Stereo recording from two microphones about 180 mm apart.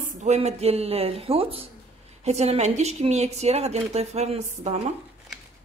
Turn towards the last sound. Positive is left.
turn(degrees=-35)  # may be behind; listen again after turning